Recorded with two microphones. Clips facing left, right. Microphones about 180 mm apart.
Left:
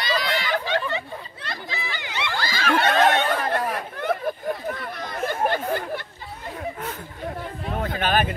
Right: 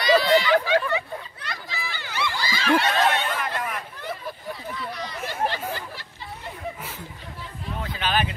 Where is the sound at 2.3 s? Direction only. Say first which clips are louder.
Right 1 dB; 55° left (ahead or behind); by 3.8 s 35° left (ahead or behind).